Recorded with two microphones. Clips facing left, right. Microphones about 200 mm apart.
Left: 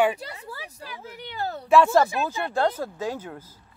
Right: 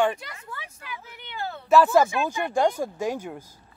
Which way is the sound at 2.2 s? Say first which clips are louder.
Right 1 dB; 15° right (ahead or behind).